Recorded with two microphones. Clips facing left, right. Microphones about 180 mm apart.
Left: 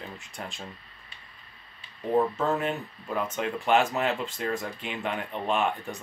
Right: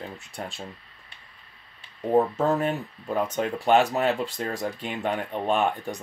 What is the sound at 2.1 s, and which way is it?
Speech, 35° right (ahead or behind).